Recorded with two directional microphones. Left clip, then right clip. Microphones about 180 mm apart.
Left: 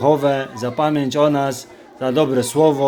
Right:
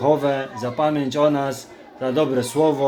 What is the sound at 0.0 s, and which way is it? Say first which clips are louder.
A man's voice: left 3 dB; 35° left (ahead or behind).